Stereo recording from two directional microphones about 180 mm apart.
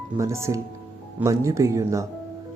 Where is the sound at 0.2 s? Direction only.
15° right (ahead or behind).